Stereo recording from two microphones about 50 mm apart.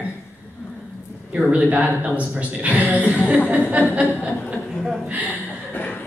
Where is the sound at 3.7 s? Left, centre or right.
Right.